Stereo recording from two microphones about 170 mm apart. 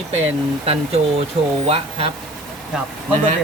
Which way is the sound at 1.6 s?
35° right (ahead or behind).